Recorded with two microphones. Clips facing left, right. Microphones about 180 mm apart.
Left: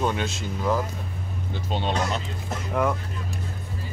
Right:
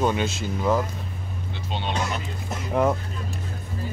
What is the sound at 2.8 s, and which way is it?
Vehicle, 25° right (ahead or behind).